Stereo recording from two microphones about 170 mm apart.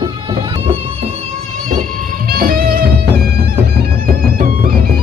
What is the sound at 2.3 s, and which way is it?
Music, 60° right (ahead or behind).